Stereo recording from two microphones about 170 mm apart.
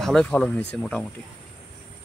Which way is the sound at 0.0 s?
5° left (ahead or behind).